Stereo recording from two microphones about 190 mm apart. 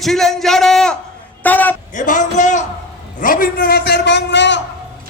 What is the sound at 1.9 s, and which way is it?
A man's voice, 40° left (ahead or behind).